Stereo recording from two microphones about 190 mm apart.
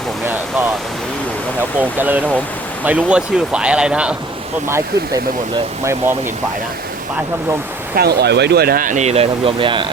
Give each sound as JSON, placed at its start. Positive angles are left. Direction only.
{"t": 1.8, "sound": "speech", "side_deg": -10}
{"t": 5.8, "sound": "speech", "side_deg": -15}
{"t": 7.9, "sound": "speech", "side_deg": -55}